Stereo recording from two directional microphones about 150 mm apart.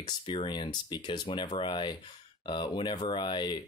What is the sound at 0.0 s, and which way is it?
Speech, 30° left (ahead or behind).